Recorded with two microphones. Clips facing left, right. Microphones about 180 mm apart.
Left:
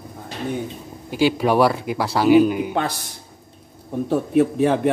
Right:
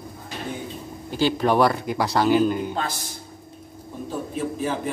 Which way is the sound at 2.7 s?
60° left (ahead or behind).